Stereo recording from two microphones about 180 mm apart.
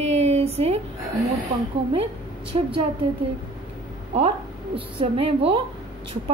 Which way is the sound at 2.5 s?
30° right (ahead or behind).